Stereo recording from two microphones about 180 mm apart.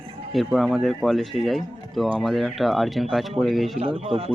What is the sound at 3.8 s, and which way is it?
Speech, 30° right (ahead or behind).